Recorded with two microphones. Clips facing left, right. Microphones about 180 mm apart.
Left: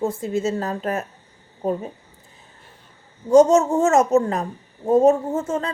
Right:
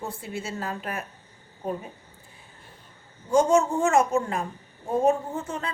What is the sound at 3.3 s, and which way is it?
A woman's voice, 40° left (ahead or behind).